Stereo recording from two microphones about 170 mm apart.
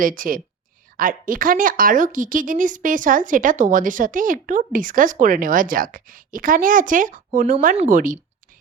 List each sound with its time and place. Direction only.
0.0 s a woman's voice: 55° right (ahead or behind)